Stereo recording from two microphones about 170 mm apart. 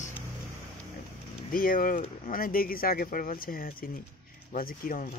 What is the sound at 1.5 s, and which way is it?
Speech, 55° left (ahead or behind).